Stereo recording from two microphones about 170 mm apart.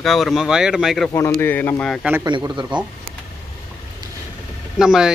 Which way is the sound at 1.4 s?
15° left (ahead or behind).